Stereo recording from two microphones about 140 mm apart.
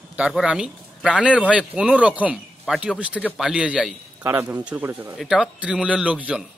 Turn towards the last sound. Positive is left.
turn(degrees=-10)  # may be behind; listen again after turning